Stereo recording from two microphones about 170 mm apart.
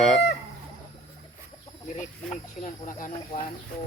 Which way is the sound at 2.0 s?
45° left (ahead or behind).